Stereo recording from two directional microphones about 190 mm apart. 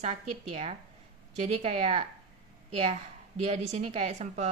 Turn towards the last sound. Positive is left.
turn(degrees=-35)  # may be behind; listen again after turning